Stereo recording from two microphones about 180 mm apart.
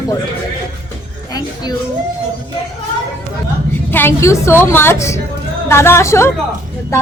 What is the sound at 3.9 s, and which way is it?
Speech, 10° left (ahead or behind).